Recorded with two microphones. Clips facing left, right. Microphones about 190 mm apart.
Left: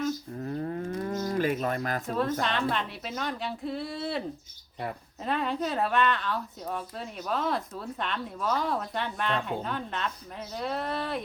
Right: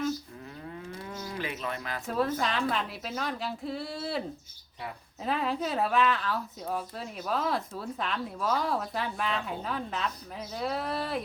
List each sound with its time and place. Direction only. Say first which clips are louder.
0.3 s moo: left 10 dB; 45° left (ahead or behind)
2.0 s a woman's voice: right 2 dB; 5° right (ahead or behind)
5.2 s a woman's voice: left 1 dB; centre (ahead or behind)